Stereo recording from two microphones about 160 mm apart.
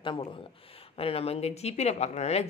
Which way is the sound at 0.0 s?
30° left (ahead or behind).